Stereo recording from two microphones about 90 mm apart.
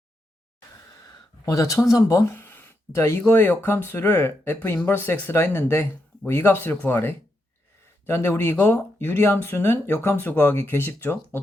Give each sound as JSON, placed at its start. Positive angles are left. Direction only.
{"t": 1.5, "sound": "speech", "side_deg": 35}